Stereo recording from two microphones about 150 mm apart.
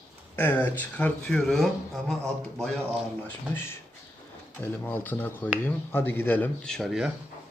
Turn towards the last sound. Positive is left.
turn(degrees=-5)  # may be behind; listen again after turning